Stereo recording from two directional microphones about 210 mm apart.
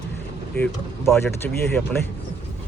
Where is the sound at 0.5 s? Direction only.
10° left (ahead or behind).